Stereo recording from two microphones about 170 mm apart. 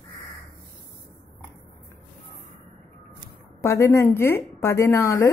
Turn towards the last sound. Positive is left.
turn(degrees=15)  # may be behind; listen again after turning